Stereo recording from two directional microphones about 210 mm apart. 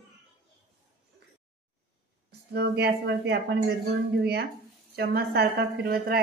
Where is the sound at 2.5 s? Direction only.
50° right (ahead or behind).